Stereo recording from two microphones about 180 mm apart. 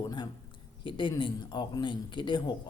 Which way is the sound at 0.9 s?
25° left (ahead or behind).